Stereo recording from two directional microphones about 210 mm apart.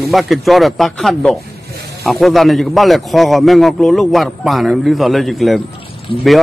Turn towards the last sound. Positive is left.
turn(degrees=25)  # may be behind; listen again after turning